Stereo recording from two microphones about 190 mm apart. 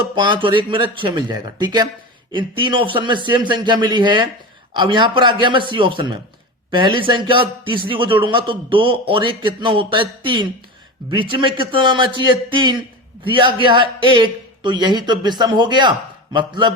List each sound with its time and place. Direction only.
0.2 s a man's voice: 25° right (ahead or behind)